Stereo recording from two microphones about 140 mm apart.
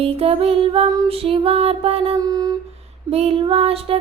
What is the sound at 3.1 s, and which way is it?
Music, 45° right (ahead or behind).